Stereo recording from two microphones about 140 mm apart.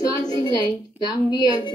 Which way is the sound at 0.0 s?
25° left (ahead or behind).